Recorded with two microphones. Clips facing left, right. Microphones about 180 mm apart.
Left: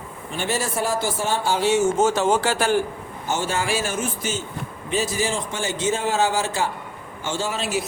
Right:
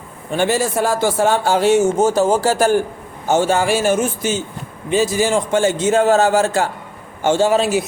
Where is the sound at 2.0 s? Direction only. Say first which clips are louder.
Right 5 dB; 40° right (ahead or behind); by 4.0 s 55° right (ahead or behind).